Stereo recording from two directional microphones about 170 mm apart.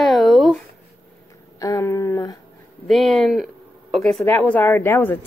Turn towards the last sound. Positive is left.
turn(degrees=15)  # may be behind; listen again after turning